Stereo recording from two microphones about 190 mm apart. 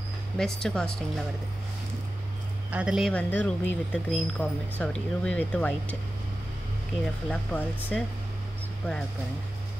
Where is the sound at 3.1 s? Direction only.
10° left (ahead or behind).